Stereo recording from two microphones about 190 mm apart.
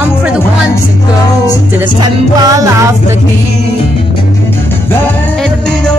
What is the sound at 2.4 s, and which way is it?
Music, 15° right (ahead or behind).